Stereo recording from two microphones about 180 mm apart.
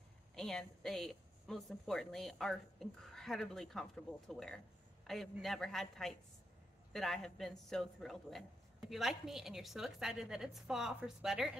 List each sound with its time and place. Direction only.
0.4 s speech: 5° left (ahead or behind)